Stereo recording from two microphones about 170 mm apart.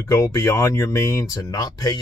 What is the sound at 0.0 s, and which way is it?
Speech, 20° left (ahead or behind).